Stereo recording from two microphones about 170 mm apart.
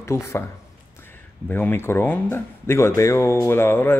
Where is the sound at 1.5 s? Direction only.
10° left (ahead or behind).